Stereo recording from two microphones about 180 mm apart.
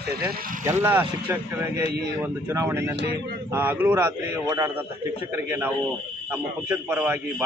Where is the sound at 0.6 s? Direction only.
10° right (ahead or behind).